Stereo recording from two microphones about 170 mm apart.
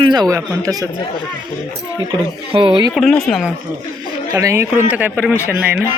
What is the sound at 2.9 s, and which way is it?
Speech, centre (ahead or behind).